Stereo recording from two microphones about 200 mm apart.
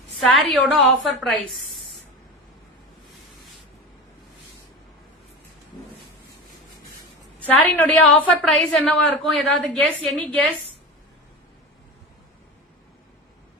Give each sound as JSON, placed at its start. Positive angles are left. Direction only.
{"t": 0.2, "sound": "a woman's voice", "side_deg": 0}
{"t": 7.4, "sound": "a woman's voice", "side_deg": 5}